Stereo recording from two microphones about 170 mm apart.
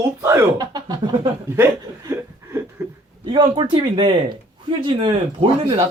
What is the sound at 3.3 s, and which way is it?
Speech, 25° right (ahead or behind).